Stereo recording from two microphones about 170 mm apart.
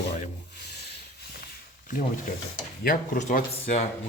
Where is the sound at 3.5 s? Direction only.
40° left (ahead or behind).